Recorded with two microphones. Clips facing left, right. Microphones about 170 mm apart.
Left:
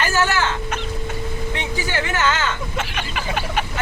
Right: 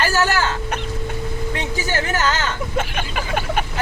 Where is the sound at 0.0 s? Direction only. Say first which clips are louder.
Right 1 dB; 40° right (ahead or behind).